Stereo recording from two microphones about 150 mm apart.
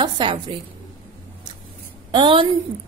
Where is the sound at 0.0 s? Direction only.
30° right (ahead or behind).